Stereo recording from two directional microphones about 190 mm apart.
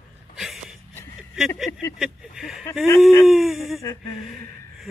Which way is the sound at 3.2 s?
Centre (ahead or behind).